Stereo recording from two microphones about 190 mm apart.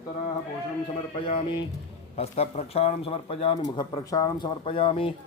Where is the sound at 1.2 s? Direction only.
25° left (ahead or behind).